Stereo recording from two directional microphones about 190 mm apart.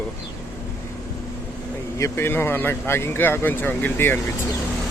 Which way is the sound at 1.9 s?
15° left (ahead or behind).